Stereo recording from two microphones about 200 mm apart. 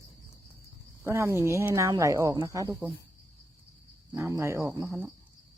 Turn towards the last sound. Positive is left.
turn(degrees=-10)  # may be behind; listen again after turning